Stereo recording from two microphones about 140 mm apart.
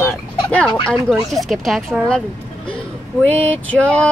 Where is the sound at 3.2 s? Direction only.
10° left (ahead or behind).